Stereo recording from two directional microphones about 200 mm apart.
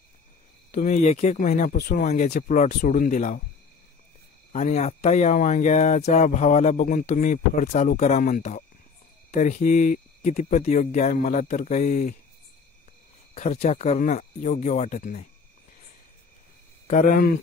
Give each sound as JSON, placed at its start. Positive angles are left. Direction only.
{"t": 0.7, "sound": "speech", "side_deg": 40}
{"t": 2.0, "sound": "speech", "side_deg": 35}
{"t": 4.5, "sound": "speech", "side_deg": 35}
{"t": 13.3, "sound": "speech", "side_deg": 35}
{"t": 16.8, "sound": "speech", "side_deg": 40}